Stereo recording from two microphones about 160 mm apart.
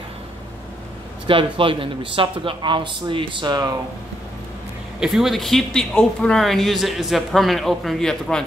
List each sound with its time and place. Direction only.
1.2 s speech: 30° right (ahead or behind)
5.0 s speech: centre (ahead or behind)